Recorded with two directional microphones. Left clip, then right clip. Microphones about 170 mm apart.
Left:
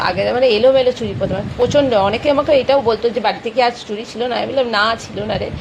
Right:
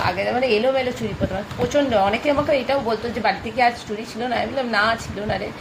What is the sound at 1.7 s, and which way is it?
A woman's voice, 20° left (ahead or behind).